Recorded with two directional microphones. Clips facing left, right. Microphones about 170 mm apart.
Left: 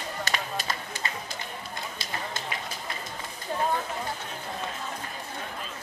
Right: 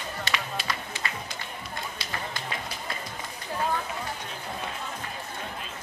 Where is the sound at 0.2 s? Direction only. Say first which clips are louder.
Even; 40° left (ahead or behind).